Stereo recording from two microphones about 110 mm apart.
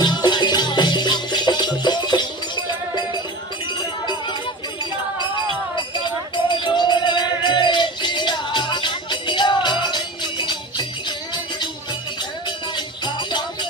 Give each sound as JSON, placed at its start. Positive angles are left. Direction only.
{"t": 0.0, "sound": "music", "side_deg": 40}
{"t": 6.3, "sound": "music", "side_deg": 45}
{"t": 12.5, "sound": "music", "side_deg": 45}